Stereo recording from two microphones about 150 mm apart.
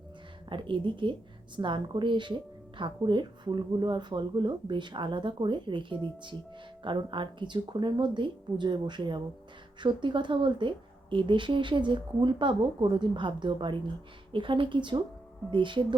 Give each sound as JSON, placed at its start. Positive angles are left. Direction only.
{"t": 0.5, "sound": "speech", "side_deg": -35}